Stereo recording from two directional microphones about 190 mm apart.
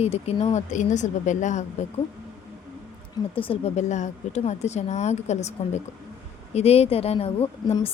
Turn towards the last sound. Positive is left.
turn(degrees=30)  # may be behind; listen again after turning